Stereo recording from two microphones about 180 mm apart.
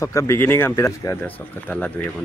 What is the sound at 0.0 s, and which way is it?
Speech, 15° left (ahead or behind).